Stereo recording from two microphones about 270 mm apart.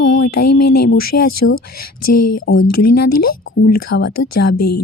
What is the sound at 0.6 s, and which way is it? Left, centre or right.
Speech, left.